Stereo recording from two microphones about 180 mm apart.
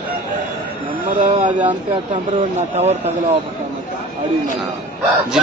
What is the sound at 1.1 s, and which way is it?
Speech, 45° right (ahead or behind).